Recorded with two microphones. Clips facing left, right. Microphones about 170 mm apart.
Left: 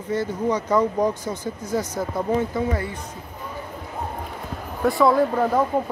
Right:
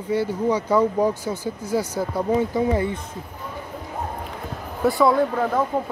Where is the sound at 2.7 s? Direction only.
20° right (ahead or behind).